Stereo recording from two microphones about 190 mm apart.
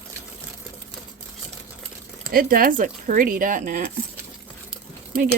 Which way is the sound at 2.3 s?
50° right (ahead or behind).